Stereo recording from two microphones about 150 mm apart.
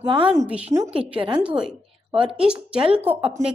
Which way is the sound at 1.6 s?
5° right (ahead or behind).